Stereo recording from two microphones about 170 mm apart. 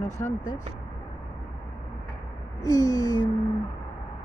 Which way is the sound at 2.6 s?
20° left (ahead or behind).